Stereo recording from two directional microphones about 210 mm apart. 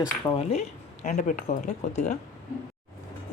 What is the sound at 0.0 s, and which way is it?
Speech, 30° left (ahead or behind).